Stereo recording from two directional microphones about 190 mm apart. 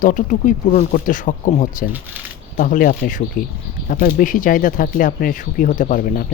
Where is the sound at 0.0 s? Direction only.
45° left (ahead or behind).